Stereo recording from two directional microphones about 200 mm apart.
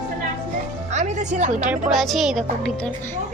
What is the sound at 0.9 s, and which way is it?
Speech, 35° right (ahead or behind).